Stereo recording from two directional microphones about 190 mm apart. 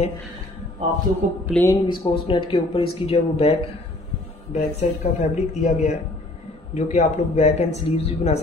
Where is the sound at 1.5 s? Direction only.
15° left (ahead or behind).